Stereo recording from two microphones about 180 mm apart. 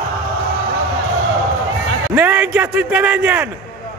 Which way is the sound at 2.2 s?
10° right (ahead or behind).